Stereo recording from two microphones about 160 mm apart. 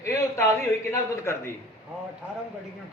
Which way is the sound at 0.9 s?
20° left (ahead or behind).